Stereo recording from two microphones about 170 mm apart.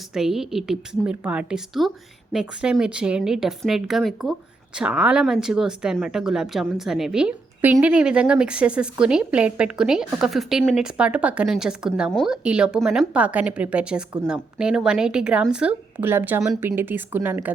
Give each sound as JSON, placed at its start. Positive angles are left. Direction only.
{"t": 0.1, "sound": "speech", "side_deg": 0}